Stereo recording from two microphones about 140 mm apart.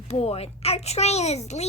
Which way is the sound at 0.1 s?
45° left (ahead or behind).